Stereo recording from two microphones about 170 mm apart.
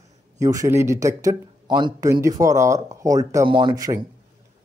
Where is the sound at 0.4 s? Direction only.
20° right (ahead or behind).